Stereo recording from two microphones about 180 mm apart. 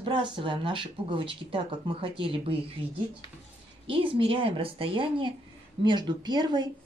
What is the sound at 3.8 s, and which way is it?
Speech, 30° right (ahead or behind).